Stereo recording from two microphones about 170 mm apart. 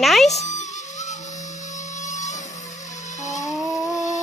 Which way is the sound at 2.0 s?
45° left (ahead or behind).